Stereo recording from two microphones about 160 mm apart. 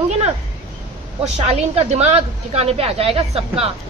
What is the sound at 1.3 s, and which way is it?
Speech, 40° right (ahead or behind).